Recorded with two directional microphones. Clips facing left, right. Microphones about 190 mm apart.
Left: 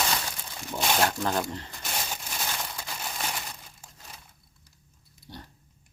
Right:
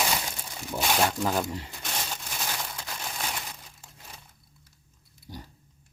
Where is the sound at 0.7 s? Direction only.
5° right (ahead or behind).